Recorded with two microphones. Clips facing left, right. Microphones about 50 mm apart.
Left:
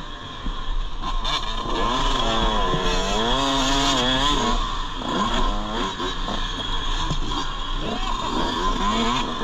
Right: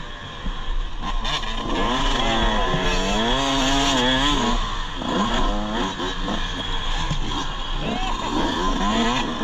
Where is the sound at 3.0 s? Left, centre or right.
Centre.